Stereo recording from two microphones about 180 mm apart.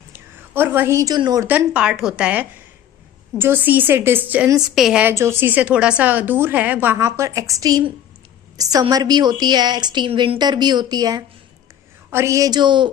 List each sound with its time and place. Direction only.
0.1 s a woman's voice: 10° right (ahead or behind)
1.5 s a woman's voice: 5° right (ahead or behind); by 12.9 s 25° right (ahead or behind)